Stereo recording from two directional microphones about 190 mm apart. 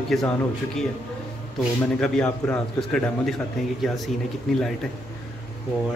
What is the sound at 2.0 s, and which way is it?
A man's voice, 5° left (ahead or behind).